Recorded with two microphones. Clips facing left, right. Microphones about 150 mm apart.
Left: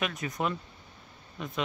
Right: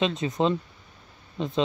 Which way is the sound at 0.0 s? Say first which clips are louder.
Right 7 dB; 25° right (ahead or behind).